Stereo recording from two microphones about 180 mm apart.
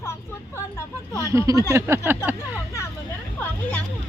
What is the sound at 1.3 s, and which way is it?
Speech, 20° right (ahead or behind).